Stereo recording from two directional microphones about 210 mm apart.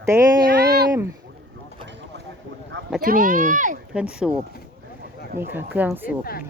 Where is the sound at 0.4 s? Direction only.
50° right (ahead or behind).